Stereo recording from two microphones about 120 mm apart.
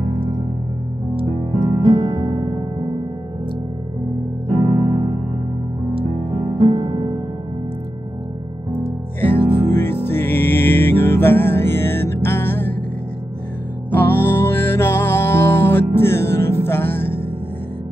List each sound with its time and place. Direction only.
1.1 s music: 45° right (ahead or behind)
5.9 s music: 50° right (ahead or behind)
8.7 s music: 20° left (ahead or behind)
13.9 s music: 15° left (ahead or behind)